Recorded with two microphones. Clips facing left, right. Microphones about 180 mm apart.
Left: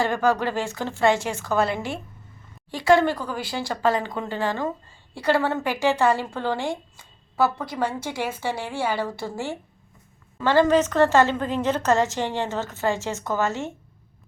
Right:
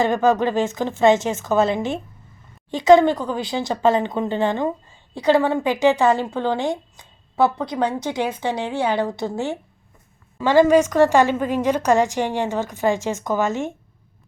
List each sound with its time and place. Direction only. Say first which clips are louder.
0.0 s a woman's voice: right 4 dB; 20° right (ahead or behind)